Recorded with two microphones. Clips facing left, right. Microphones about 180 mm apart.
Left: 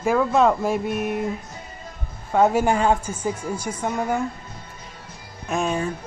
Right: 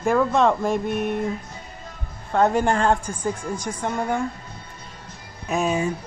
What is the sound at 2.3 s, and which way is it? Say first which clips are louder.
Speech: left 1 dB; 5° left (ahead or behind).